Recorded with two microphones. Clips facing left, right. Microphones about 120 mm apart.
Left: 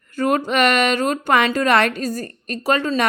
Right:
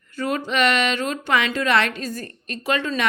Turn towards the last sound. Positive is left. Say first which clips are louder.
# left 4 dB
turn(degrees=40)  # may be behind; listen again after turning